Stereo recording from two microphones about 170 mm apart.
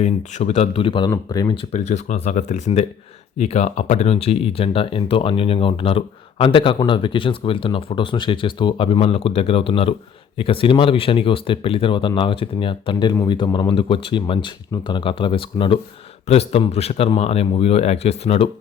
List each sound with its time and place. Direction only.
0.0 s speech: 40° left (ahead or behind); by 1.5 s 20° left (ahead or behind)
1.7 s speech: 40° left (ahead or behind)